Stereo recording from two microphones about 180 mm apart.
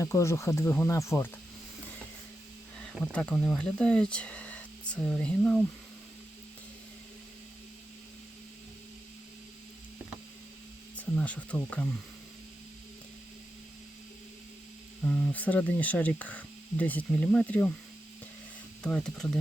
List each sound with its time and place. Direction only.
0.0 s speech: 15° left (ahead or behind)
2.7 s speech: 5° left (ahead or behind)
10.9 s speech: 5° left (ahead or behind)
15.0 s speech: 10° left (ahead or behind)
18.8 s speech: 5° left (ahead or behind)